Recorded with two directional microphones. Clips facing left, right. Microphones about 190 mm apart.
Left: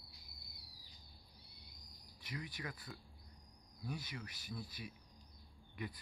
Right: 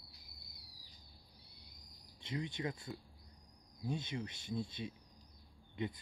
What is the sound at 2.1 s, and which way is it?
Speech, 25° right (ahead or behind).